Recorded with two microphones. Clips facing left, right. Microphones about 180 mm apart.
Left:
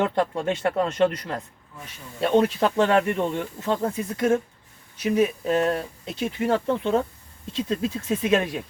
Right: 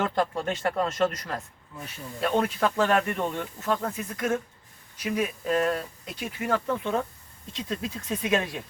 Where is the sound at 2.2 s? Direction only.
30° left (ahead or behind).